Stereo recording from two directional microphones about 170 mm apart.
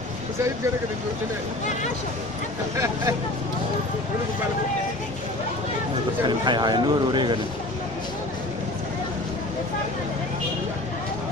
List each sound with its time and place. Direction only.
6.2 s speech: 25° right (ahead or behind)